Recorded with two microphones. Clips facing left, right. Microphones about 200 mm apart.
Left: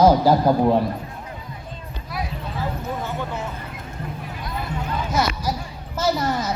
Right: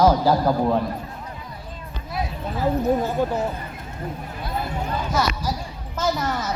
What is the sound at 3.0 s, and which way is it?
Speech, 40° right (ahead or behind).